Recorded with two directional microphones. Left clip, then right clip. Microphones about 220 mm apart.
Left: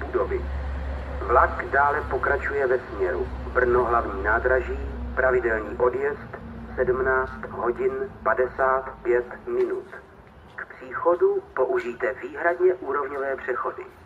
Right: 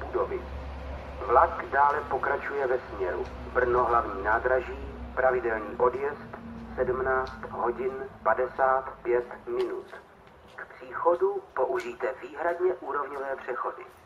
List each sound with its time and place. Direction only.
1.3 s speech: 30° right (ahead or behind)
10.9 s speech: 30° right (ahead or behind)